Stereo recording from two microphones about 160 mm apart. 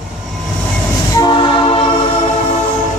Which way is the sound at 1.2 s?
30° left (ahead or behind).